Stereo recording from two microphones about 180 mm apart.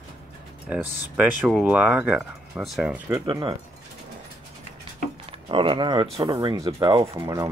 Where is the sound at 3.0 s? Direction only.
15° right (ahead or behind).